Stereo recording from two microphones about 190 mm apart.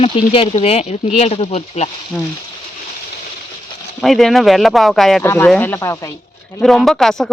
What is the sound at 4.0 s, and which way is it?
Speech, centre (ahead or behind).